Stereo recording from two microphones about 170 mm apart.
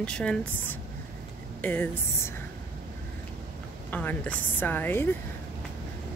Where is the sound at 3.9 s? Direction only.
10° left (ahead or behind).